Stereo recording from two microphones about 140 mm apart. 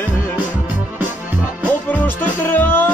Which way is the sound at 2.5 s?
15° left (ahead or behind).